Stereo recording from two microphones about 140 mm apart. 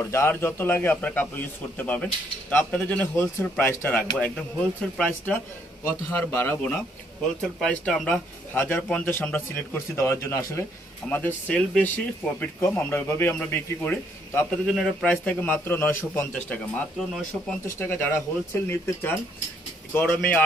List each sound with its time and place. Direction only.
0.0 s speech: 15° left (ahead or behind)
7.6 s speech: 5° left (ahead or behind)
14.7 s speech: centre (ahead or behind)
17.6 s speech: 15° left (ahead or behind)